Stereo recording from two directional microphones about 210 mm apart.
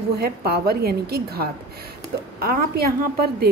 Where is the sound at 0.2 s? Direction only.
50° right (ahead or behind).